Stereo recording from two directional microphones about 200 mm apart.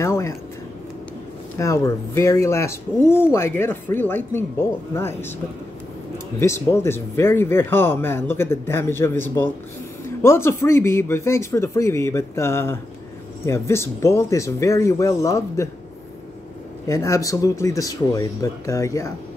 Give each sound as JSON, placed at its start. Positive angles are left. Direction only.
{"t": 0.0, "sound": "a sound", "side_deg": 15}
{"t": 1.6, "sound": "speech", "side_deg": 15}
{"t": 6.4, "sound": "speech", "side_deg": 15}
{"t": 16.8, "sound": "speech", "side_deg": 15}